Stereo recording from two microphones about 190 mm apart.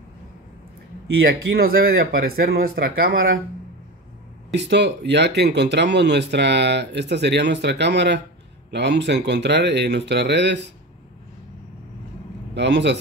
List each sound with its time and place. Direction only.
1.2 s speech: 55° right (ahead or behind)
4.6 s speech: 65° right (ahead or behind)
12.5 s speech: 65° right (ahead or behind)